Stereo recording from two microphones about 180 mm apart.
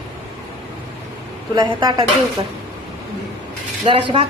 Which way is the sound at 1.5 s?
25° right (ahead or behind).